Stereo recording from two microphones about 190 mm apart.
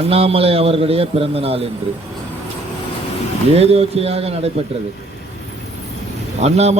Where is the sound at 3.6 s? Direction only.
30° right (ahead or behind).